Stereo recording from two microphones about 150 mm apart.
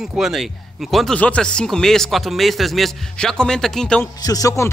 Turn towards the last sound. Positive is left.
turn(degrees=20)  # may be behind; listen again after turning